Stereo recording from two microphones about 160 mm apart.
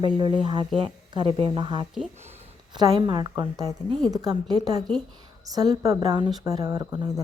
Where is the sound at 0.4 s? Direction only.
30° right (ahead or behind).